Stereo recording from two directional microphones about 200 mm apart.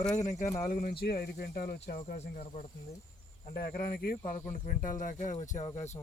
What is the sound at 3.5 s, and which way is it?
Speech, 50° left (ahead or behind).